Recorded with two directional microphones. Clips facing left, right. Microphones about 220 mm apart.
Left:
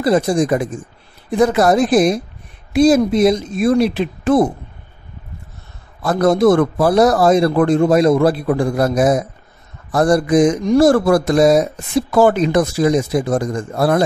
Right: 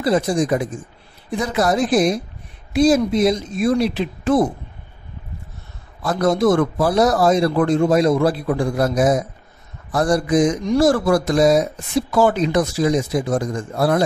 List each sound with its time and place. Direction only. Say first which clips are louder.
0.0 s a woman's voice: left 3 dB; 50° left (ahead or behind)
6.0 s a man's voice: left 4 dB; 55° left (ahead or behind)